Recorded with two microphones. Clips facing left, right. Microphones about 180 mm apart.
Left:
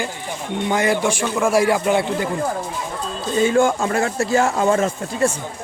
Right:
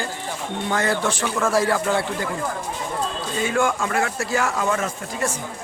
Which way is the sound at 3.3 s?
30° left (ahead or behind).